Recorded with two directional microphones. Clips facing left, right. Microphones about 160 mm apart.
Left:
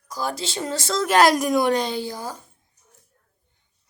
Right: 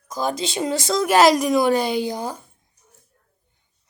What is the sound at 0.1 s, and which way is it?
Speech, 20° right (ahead or behind).